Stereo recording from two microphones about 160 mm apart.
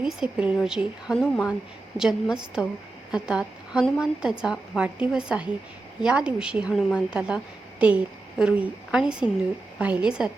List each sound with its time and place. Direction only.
0.0 s a woman's voice: 5° right (ahead or behind)